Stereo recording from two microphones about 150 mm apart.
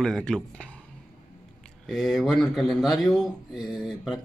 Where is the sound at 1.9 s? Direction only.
Centre (ahead or behind).